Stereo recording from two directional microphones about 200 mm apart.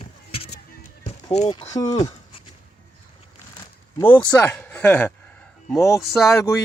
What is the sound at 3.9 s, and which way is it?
Speech, 15° left (ahead or behind).